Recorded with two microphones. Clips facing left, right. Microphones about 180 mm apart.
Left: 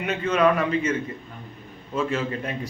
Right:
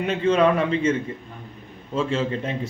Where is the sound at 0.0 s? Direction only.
30° right (ahead or behind).